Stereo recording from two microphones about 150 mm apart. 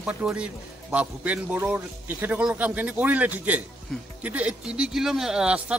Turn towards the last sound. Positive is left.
turn(degrees=-5)  # may be behind; listen again after turning